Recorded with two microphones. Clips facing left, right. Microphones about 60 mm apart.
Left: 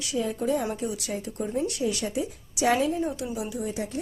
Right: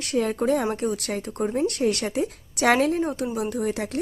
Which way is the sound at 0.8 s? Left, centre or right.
Right.